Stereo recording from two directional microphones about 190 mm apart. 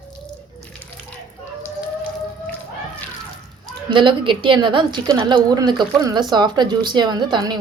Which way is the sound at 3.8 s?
25° right (ahead or behind).